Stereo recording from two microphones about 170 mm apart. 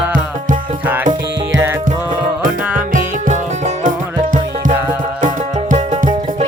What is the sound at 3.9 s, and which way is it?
Music, 50° right (ahead or behind).